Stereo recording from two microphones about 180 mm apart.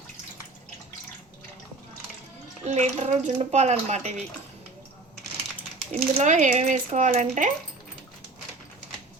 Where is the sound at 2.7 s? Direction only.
40° right (ahead or behind).